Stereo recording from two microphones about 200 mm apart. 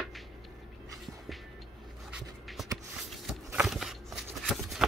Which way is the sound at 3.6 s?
Centre (ahead or behind).